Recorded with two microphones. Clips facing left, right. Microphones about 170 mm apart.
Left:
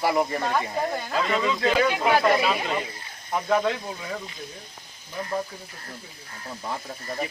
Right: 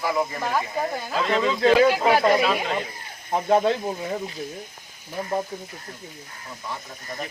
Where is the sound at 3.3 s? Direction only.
30° right (ahead or behind).